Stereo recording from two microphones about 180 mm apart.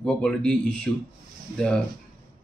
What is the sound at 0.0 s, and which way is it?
Speech, 5° left (ahead or behind).